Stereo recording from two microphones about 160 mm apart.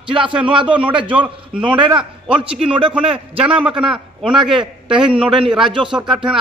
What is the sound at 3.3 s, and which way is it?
Speech, 10° right (ahead or behind).